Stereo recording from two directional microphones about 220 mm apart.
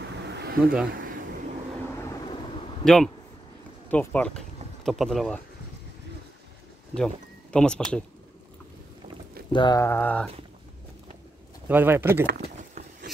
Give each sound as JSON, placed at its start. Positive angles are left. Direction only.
{"t": 0.2, "sound": "a sound", "side_deg": -50}
{"t": 2.8, "sound": "speech", "side_deg": 0}
{"t": 7.5, "sound": "speech", "side_deg": 5}
{"t": 9.5, "sound": "speech", "side_deg": 20}
{"t": 11.6, "sound": "speech", "side_deg": -10}
{"t": 12.3, "sound": "a sound", "side_deg": -40}